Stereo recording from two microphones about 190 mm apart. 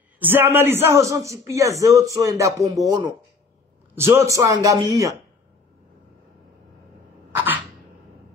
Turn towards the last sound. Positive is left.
turn(degrees=-10)  # may be behind; listen again after turning